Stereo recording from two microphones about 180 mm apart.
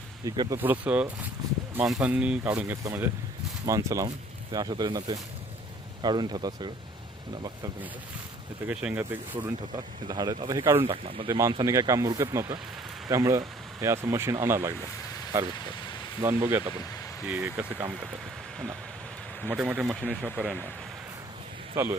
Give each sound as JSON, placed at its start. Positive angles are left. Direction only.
{"t": 0.3, "sound": "speech", "side_deg": -20}
{"t": 1.4, "sound": "speech", "side_deg": -25}
{"t": 1.7, "sound": "speech", "side_deg": -5}
{"t": 8.6, "sound": "speech", "side_deg": -5}
{"t": 9.7, "sound": "speech", "side_deg": -20}
{"t": 16.2, "sound": "speech", "side_deg": -10}
{"t": 19.5, "sound": "speech", "side_deg": -5}
{"t": 21.7, "sound": "speech", "side_deg": -15}